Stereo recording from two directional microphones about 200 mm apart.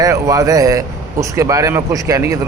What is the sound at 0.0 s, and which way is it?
Speech, 15° right (ahead or behind).